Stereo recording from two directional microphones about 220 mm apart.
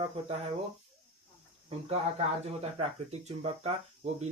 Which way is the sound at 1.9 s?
30° right (ahead or behind).